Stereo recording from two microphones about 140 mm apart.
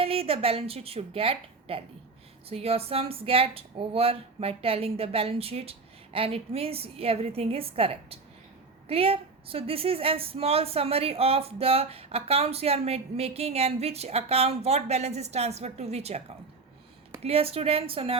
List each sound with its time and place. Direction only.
0.0 s a woman's voice: 45° right (ahead or behind)
17.2 s a woman's voice: 45° right (ahead or behind)